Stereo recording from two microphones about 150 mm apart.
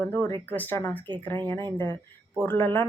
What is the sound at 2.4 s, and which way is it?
Speech, 15° left (ahead or behind).